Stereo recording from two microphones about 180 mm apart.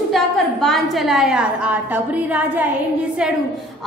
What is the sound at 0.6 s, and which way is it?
A woman's voice, centre (ahead or behind).